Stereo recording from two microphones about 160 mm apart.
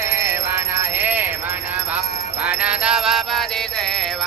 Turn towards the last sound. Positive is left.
turn(degrees=0)  # may be behind; listen again after turning